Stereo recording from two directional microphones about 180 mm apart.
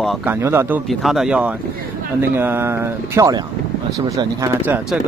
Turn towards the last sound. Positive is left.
turn(degrees=-20)  # may be behind; listen again after turning